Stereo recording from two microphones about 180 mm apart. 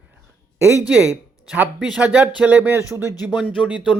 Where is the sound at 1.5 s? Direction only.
5° right (ahead or behind).